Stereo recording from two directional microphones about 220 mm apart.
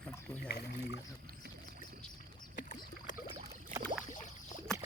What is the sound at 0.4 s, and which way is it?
Speech, 45° left (ahead or behind).